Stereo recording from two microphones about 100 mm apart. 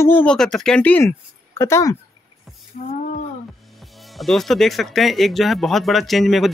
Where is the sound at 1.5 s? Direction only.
30° left (ahead or behind).